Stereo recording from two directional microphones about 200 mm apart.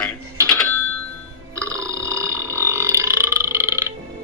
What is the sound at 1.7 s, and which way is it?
Burping, 15° right (ahead or behind).